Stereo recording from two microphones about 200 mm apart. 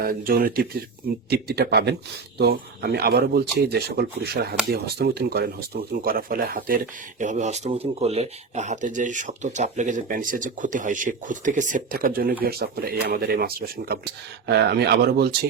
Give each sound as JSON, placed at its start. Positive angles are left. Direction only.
{"t": 0.0, "sound": "speech", "side_deg": -45}